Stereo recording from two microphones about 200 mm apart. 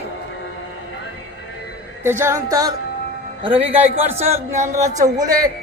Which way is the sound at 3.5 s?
30° right (ahead or behind).